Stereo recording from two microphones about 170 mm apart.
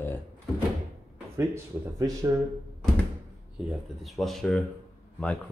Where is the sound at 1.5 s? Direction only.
20° right (ahead or behind).